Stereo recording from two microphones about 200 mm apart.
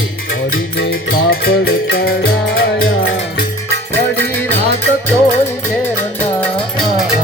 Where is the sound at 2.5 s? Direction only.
85° left.